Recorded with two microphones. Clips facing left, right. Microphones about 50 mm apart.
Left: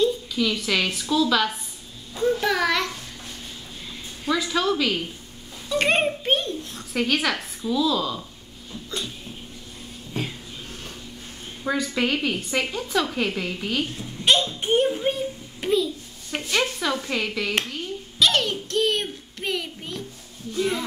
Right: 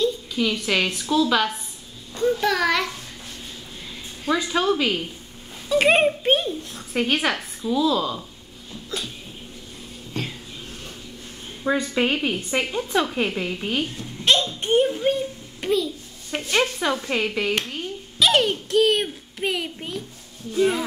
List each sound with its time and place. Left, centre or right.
0.3 s a woman's voice: centre
2.1 s a child's voice: centre
4.3 s a child's voice: centre
11.7 s a child's voice: centre
13.9 s a child's voice: centre
16.4 s a child's voice: centre